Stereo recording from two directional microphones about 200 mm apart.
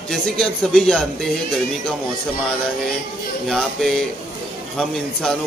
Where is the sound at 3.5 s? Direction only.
Centre (ahead or behind).